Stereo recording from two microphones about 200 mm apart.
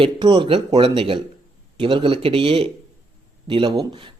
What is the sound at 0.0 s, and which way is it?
Speech, 25° right (ahead or behind).